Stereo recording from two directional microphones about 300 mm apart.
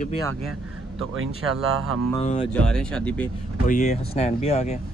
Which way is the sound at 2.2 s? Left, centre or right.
Left.